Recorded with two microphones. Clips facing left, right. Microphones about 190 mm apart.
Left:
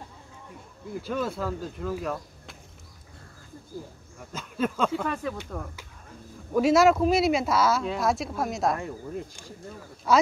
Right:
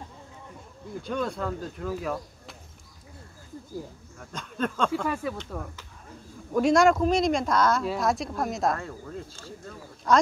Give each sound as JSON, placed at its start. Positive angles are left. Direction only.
{"t": 1.0, "sound": "speech", "side_deg": 5}
{"t": 4.2, "sound": "speech", "side_deg": 5}
{"t": 5.0, "sound": "speech", "side_deg": -10}
{"t": 8.7, "sound": "speech", "side_deg": 15}